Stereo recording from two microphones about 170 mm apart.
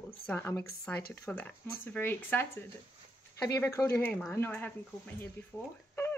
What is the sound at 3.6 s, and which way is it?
A woman's voice, 15° left (ahead or behind).